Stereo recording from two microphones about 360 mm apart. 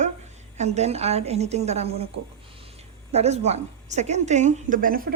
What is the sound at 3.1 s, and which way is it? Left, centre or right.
Speech, centre.